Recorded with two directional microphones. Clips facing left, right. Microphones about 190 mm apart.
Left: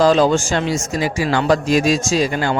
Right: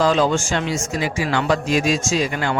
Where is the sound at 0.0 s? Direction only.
35° left (ahead or behind).